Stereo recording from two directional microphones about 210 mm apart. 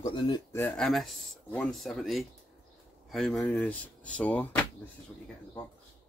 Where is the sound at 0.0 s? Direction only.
20° left (ahead or behind).